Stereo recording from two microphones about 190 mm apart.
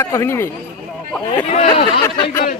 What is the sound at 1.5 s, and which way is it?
Speech, 35° left (ahead or behind).